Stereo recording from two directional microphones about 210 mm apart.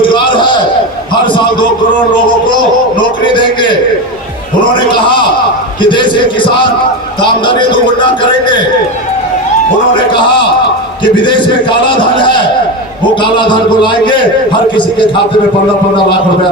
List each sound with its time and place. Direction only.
0.0 s a sound: 20° left (ahead or behind)
2.5 s a man's voice: 20° left (ahead or behind)
9.9 s a man's voice: 20° left (ahead or behind)